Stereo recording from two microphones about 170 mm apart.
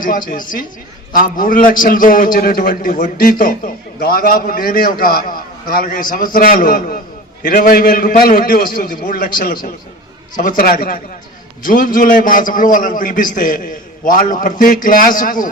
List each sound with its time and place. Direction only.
0.0 s a man's voice: 55° left (ahead or behind)